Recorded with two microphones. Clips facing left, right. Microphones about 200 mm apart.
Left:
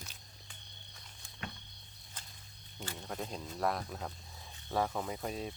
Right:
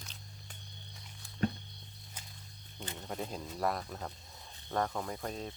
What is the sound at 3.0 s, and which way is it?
Speech, 5° right (ahead or behind).